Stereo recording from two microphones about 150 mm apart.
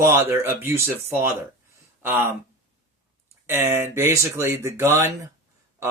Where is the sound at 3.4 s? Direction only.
15° right (ahead or behind).